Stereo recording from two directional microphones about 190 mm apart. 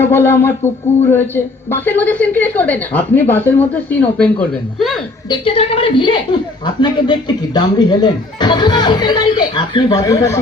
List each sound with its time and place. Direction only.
0.0 s speech: 10° left (ahead or behind)
1.7 s speech: 10° left (ahead or behind)
5.3 s speech: 30° left (ahead or behind)